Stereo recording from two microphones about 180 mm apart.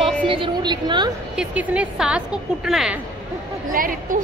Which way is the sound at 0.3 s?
25° right (ahead or behind).